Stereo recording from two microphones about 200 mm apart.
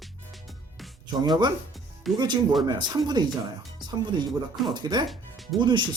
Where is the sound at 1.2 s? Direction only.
20° right (ahead or behind).